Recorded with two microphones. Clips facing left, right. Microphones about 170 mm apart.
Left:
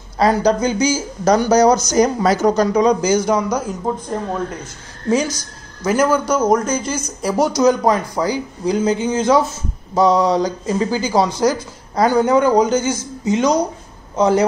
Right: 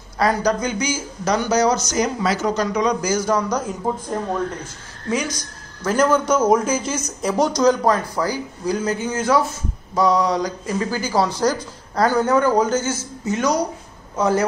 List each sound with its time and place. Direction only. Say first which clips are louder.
0.2 s speech: left 4 dB; 25° left (ahead or behind); by 3.7 s 5° left (ahead or behind)
5.9 s speech: left 1 dB; 5° left (ahead or behind)